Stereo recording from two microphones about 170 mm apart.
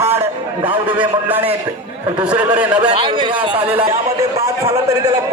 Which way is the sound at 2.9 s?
30° right (ahead or behind).